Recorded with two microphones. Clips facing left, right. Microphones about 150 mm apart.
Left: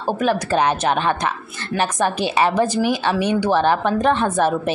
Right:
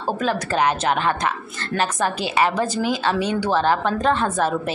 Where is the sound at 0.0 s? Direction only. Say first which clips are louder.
Left 3 dB; 15° left (ahead or behind).